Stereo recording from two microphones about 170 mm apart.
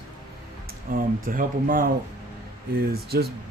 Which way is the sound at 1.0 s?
55° right (ahead or behind).